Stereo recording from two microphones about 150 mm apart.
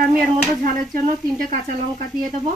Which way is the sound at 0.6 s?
60° right (ahead or behind).